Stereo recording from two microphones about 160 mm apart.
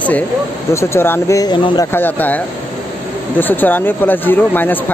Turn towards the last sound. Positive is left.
turn(degrees=10)  # may be behind; listen again after turning